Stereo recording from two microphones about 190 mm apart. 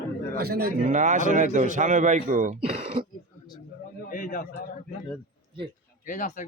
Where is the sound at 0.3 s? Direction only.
55° right (ahead or behind).